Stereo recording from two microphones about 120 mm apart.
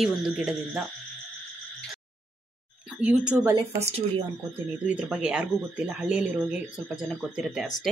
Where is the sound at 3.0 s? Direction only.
10° right (ahead or behind).